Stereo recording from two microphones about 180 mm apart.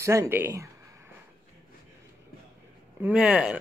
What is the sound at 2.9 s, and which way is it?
Speech, 5° right (ahead or behind).